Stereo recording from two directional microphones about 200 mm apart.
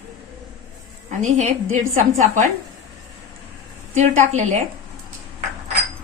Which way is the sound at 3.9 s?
35° right (ahead or behind).